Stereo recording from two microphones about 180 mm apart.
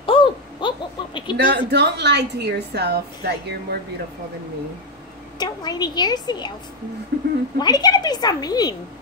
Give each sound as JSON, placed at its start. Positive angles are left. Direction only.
{"t": 0.0, "sound": "a sound", "side_deg": 30}
{"t": 1.3, "sound": "a woman's voice", "side_deg": -70}
{"t": 5.4, "sound": "a woman's voice", "side_deg": 20}
{"t": 7.1, "sound": "a woman's voice", "side_deg": -60}
{"t": 7.5, "sound": "a woman's voice", "side_deg": 20}